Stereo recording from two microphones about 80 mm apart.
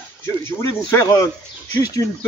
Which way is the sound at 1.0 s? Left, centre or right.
Left.